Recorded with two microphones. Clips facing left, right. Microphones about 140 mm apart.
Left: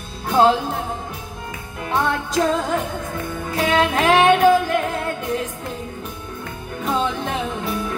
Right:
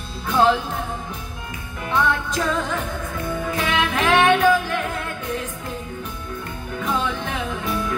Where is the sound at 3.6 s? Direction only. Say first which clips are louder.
Left 6 dB; 35° left (ahead or behind).